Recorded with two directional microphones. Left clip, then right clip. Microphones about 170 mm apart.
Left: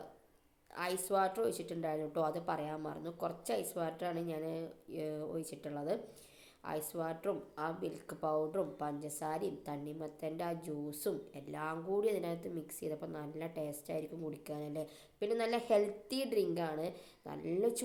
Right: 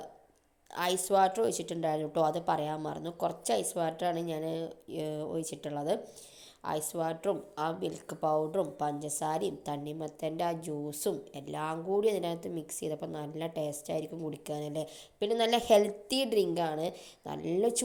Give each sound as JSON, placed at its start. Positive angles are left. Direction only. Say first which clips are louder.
{"t": 0.8, "sound": "a woman's voice", "louder": "right 7 dB", "side_deg": -35}